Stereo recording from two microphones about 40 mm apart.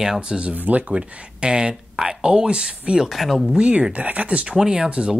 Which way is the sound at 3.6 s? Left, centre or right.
Right.